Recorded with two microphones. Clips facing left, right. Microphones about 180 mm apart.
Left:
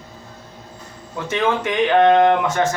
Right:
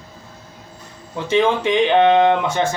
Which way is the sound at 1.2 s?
25° right (ahead or behind).